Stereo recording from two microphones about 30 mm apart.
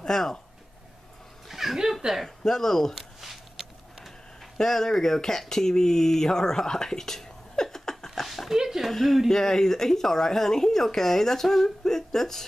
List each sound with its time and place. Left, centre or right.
0.0 s speech: centre
1.5 s a sound: centre
2.2 s speech: centre
2.9 s a sound: centre
4.6 s speech: centre
8.5 s speech: centre
8.9 s speech: centre
9.3 s speech: centre